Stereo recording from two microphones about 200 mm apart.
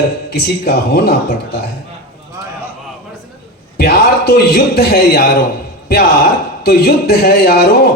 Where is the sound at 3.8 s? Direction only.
50° left (ahead or behind).